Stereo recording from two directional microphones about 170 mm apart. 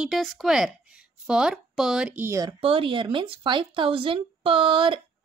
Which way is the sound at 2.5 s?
35° right (ahead or behind).